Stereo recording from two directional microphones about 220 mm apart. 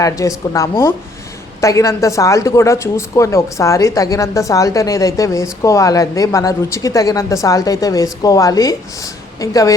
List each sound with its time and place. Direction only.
0.0 s speech: 15° left (ahead or behind)